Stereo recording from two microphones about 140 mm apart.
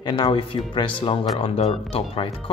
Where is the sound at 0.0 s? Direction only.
35° left (ahead or behind).